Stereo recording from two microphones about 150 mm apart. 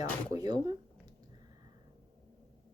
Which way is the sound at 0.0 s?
25° right (ahead or behind).